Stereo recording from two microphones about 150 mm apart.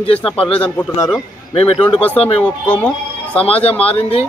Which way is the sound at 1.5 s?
40° left (ahead or behind).